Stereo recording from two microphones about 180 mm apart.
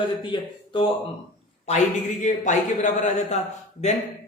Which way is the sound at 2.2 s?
45° left (ahead or behind).